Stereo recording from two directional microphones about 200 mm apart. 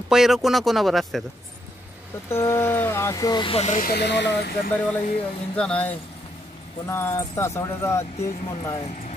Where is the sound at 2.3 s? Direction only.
15° left (ahead or behind); by 4.7 s 55° left (ahead or behind).